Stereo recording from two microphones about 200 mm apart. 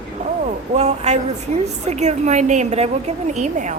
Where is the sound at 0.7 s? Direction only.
35° right (ahead or behind).